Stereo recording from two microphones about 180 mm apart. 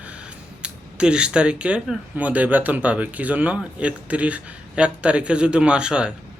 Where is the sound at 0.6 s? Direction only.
5° right (ahead or behind).